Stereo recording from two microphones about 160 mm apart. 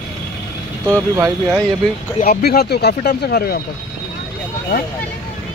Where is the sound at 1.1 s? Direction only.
15° right (ahead or behind).